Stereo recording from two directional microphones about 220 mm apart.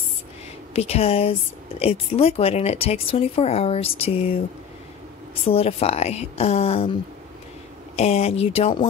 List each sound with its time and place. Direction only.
0.7 s speech: 30° left (ahead or behind)
5.5 s speech: 25° left (ahead or behind)